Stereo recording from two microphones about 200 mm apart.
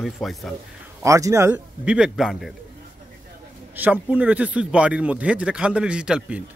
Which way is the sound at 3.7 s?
10° right (ahead or behind).